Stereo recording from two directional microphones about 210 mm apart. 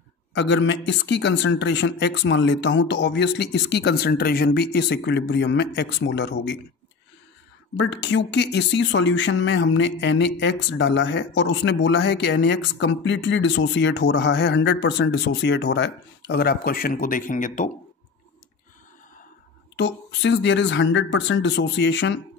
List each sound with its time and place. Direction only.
0.3 s speech: 60° left (ahead or behind)
7.7 s speech: 60° left (ahead or behind); by 17.6 s 40° left (ahead or behind)
19.7 s speech: 55° left (ahead or behind)